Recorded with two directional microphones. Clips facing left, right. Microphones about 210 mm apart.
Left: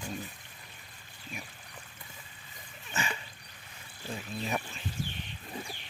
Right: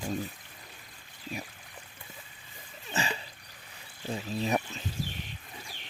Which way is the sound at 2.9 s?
35° right (ahead or behind).